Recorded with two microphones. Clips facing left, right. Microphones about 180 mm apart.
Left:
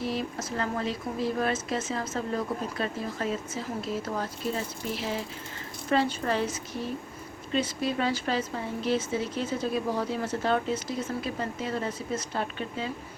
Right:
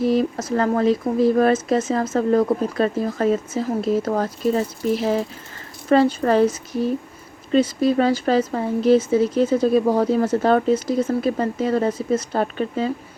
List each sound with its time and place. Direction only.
0.0 s a woman's voice: 45° right (ahead or behind)
7.5 s speech: 40° right (ahead or behind)